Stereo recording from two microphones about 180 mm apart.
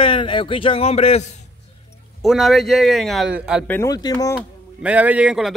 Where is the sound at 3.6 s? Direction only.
15° left (ahead or behind).